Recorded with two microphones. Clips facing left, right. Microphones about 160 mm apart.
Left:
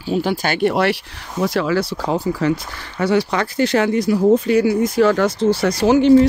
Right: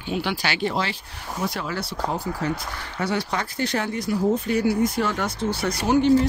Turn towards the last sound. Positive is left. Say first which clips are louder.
# left 7 dB
turn(degrees=90)